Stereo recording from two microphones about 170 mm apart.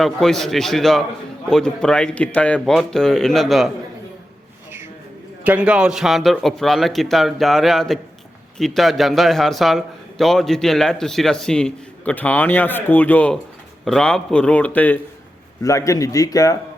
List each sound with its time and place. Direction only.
0.0 s a man's voice: centre (ahead or behind)
5.4 s a man's voice: 10° right (ahead or behind); by 16.6 s 20° left (ahead or behind)